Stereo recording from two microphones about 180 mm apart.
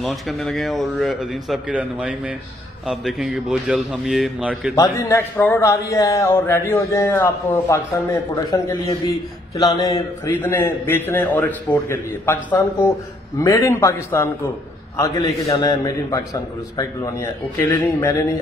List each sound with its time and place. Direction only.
0.0 s a man's voice: centre (ahead or behind)
4.7 s a man's voice: 15° left (ahead or behind)
10.3 s a man's voice: 10° left (ahead or behind)